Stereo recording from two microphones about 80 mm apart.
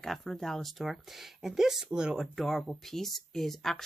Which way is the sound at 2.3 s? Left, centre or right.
Centre.